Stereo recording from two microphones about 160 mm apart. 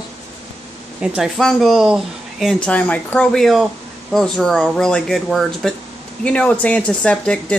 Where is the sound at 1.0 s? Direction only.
Centre (ahead or behind).